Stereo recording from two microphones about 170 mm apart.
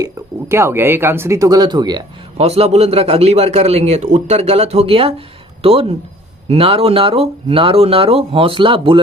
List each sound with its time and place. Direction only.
0.0 s speech: 15° right (ahead or behind)
2.4 s a man's voice: 40° right (ahead or behind)
6.5 s a man's voice: 35° right (ahead or behind)